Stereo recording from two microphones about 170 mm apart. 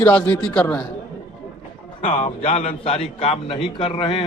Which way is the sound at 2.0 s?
45° left (ahead or behind).